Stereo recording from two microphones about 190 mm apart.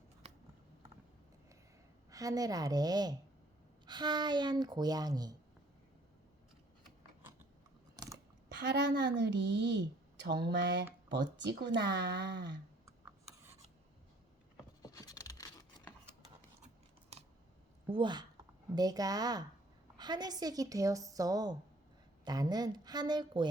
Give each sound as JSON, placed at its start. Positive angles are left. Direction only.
{"t": 2.0, "sound": "a woman's voice", "side_deg": -20}
{"t": 8.5, "sound": "speech", "side_deg": -65}
{"t": 14.8, "sound": "scissors", "side_deg": 20}
{"t": 17.8, "sound": "a woman's voice", "side_deg": -25}